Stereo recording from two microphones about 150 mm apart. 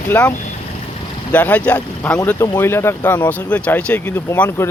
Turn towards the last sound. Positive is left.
turn(degrees=15)  # may be behind; listen again after turning